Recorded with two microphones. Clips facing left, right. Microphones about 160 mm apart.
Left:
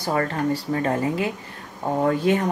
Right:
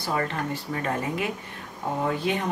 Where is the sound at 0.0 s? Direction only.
45° left (ahead or behind).